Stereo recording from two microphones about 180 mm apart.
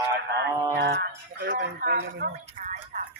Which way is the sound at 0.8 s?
65° right (ahead or behind).